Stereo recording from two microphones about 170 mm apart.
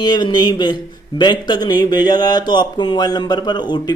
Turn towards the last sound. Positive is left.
turn(degrees=25)  # may be behind; listen again after turning